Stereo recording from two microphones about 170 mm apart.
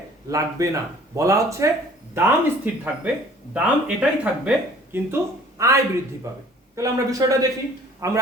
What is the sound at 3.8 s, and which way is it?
Speech, 5° right (ahead or behind).